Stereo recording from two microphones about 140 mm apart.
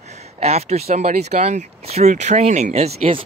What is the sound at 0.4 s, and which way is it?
Speech, 50° right (ahead or behind).